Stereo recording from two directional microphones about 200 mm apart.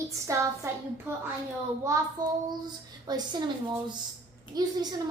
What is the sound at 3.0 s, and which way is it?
Speech, 20° right (ahead or behind).